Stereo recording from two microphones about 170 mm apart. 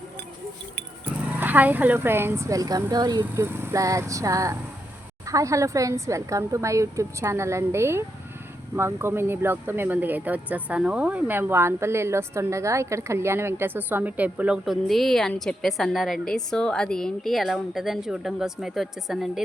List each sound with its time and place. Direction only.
1.4 s speech: 10° right (ahead or behind)